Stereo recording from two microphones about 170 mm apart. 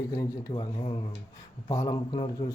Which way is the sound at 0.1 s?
25° left (ahead or behind).